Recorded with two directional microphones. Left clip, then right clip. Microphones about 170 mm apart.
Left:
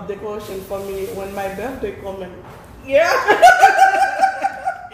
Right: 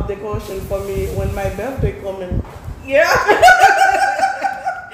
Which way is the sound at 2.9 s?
5° left (ahead or behind).